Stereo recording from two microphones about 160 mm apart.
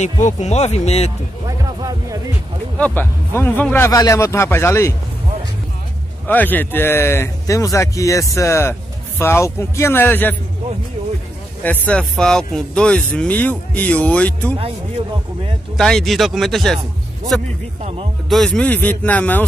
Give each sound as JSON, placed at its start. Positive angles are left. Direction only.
{"t": 0.0, "sound": "speech", "side_deg": 45}
{"t": 1.6, "sound": "music", "side_deg": -20}
{"t": 2.8, "sound": "speech", "side_deg": 10}
{"t": 6.2, "sound": "speech", "side_deg": 10}
{"t": 11.6, "sound": "speech", "side_deg": 10}
{"t": 15.8, "sound": "speech", "side_deg": 5}
{"t": 18.3, "sound": "speech", "side_deg": 5}